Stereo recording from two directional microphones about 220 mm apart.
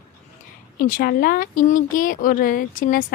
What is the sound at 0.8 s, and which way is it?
Speech, 40° left (ahead or behind).